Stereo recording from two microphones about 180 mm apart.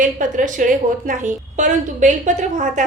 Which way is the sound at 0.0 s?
45° right (ahead or behind).